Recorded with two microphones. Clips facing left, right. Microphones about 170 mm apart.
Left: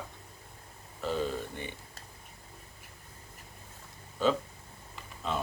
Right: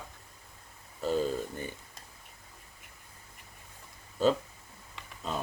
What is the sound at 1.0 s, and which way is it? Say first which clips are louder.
Speech: right 3 dB; 40° right (ahead or behind).